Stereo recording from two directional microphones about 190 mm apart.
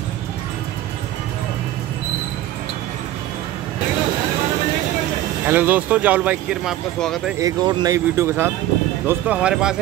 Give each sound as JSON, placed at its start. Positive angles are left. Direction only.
{"t": 5.5, "sound": "speech", "side_deg": -10}
{"t": 7.3, "sound": "speech", "side_deg": -20}